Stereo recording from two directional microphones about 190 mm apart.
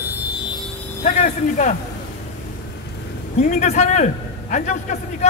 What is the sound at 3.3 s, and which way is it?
A man's voice, 40° left (ahead or behind).